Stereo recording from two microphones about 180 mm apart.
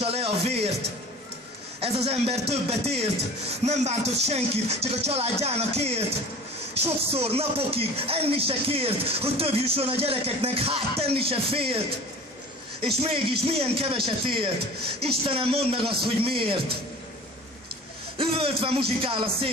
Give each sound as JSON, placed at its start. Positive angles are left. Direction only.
{"t": 0.0, "sound": "music", "side_deg": -35}
{"t": 1.8, "sound": "speech", "side_deg": -35}
{"t": 12.8, "sound": "speech", "side_deg": -30}
{"t": 15.8, "sound": "a man's voice", "side_deg": -60}
{"t": 16.2, "sound": "speech", "side_deg": -30}
{"t": 18.1, "sound": "speech", "side_deg": -30}